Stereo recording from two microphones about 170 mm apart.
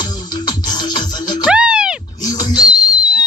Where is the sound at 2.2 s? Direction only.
25° left (ahead or behind).